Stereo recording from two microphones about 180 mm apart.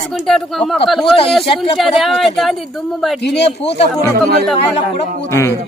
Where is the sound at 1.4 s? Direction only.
30° left (ahead or behind).